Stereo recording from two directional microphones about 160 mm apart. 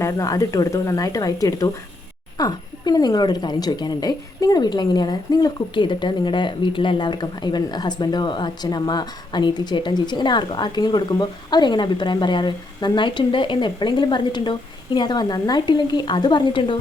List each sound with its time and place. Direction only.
0.0 s speech: 20° left (ahead or behind)